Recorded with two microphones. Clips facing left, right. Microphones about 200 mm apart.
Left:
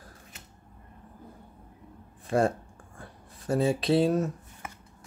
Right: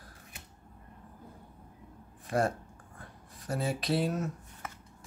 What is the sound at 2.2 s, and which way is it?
Speech, 25° left (ahead or behind).